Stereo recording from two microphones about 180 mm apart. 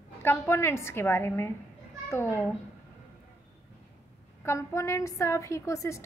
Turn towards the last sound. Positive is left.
turn(degrees=15)  # may be behind; listen again after turning